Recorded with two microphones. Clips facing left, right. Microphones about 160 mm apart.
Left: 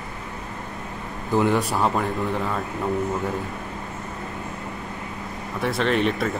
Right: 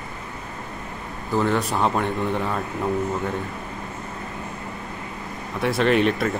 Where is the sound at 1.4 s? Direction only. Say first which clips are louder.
Left 1 dB; 15° left (ahead or behind).